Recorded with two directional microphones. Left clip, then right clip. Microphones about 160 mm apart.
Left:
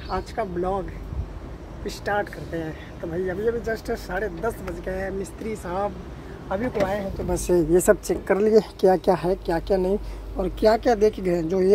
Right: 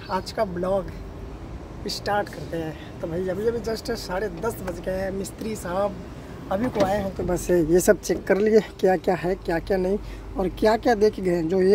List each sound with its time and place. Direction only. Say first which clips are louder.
0.1 s speech: right 2 dB; 10° right (ahead or behind)
1.9 s speech: right 1 dB; 5° right (ahead or behind)
6.5 s speech: right 2 dB; 20° right (ahead or behind)
7.4 s speech: left 1 dB; 10° right (ahead or behind)
7.8 s speech: even; 25° right (ahead or behind)
8.5 s speech: left 3 dB; 5° right (ahead or behind)
10.3 s speech: left 1 dB; 10° right (ahead or behind)